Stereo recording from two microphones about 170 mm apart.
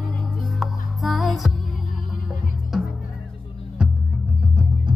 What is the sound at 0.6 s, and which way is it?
Music, centre (ahead or behind).